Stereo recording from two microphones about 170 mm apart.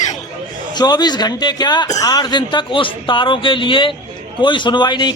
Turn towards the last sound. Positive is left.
turn(degrees=25)  # may be behind; listen again after turning